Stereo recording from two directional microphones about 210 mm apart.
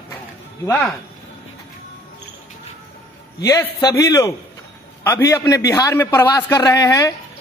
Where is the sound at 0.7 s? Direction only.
10° left (ahead or behind).